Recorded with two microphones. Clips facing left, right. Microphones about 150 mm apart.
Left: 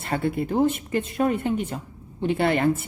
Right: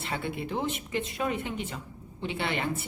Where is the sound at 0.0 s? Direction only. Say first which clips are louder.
Left 8 dB; 45° left (ahead or behind).